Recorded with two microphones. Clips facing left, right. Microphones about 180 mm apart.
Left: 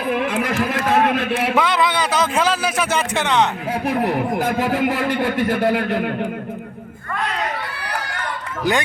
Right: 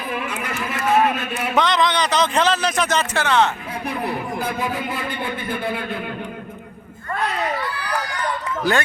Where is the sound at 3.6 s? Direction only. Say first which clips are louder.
Left 6 dB; 90° left; by 6.3 s 70° left (ahead or behind).